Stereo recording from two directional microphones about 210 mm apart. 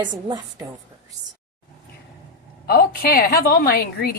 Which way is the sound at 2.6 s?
45° left (ahead or behind).